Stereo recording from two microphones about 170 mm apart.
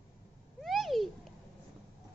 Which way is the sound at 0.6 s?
Centre (ahead or behind).